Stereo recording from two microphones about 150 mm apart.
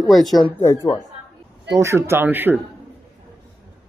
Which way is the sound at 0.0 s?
Centre (ahead or behind).